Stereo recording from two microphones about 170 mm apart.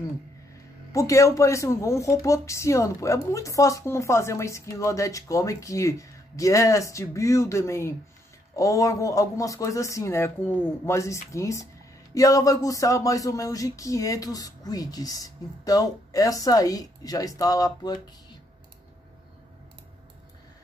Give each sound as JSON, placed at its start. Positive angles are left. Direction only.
{"t": 0.9, "sound": "speech", "side_deg": 20}